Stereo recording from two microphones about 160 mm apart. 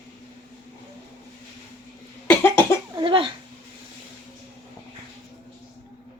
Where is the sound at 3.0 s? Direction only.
30° right (ahead or behind).